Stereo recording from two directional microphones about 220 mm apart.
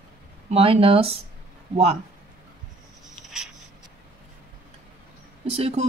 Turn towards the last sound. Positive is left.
turn(degrees=-25)  # may be behind; listen again after turning